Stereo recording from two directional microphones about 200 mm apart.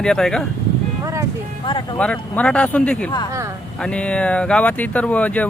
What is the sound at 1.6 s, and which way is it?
Speech, 20° left (ahead or behind).